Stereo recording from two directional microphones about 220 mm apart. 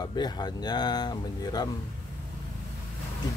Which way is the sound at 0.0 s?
20° left (ahead or behind).